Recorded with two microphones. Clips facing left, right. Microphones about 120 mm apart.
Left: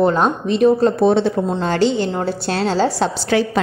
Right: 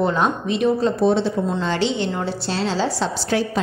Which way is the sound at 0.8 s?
60° left (ahead or behind).